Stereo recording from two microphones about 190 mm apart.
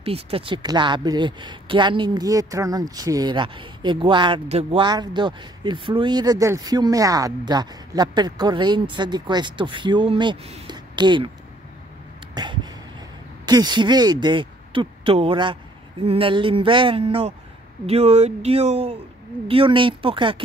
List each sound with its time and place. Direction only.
0.0 s speech: 30° right (ahead or behind)
12.4 s a sound: 20° right (ahead or behind)
13.5 s speech: 20° right (ahead or behind)